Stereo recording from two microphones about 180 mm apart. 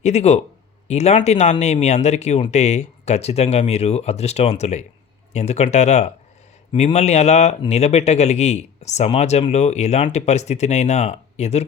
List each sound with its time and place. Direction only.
0.0 s speech: 40° left (ahead or behind)